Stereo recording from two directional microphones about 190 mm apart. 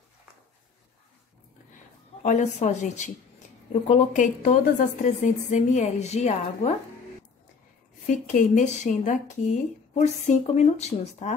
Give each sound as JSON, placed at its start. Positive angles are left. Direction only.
{"t": 2.2, "sound": "speech", "side_deg": 40}
{"t": 8.3, "sound": "speech", "side_deg": 40}